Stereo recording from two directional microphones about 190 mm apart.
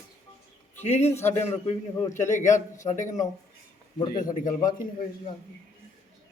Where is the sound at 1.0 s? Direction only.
15° left (ahead or behind).